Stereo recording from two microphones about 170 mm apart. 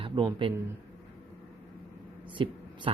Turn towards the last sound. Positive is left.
turn(degrees=-30)  # may be behind; listen again after turning